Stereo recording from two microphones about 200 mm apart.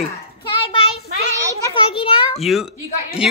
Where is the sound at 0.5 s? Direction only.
25° left (ahead or behind).